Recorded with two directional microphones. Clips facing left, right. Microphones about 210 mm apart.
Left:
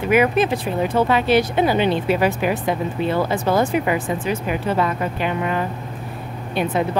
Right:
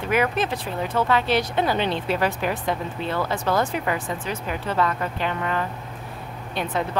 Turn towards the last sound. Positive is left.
turn(degrees=10)  # may be behind; listen again after turning